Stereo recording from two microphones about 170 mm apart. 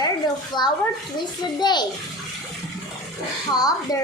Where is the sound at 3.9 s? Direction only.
20° left (ahead or behind).